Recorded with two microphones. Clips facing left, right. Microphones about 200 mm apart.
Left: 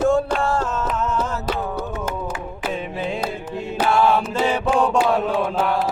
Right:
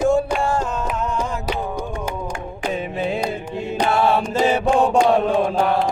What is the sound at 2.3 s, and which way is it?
Music, centre (ahead or behind).